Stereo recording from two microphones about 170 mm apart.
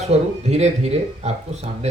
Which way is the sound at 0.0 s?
40° right (ahead or behind).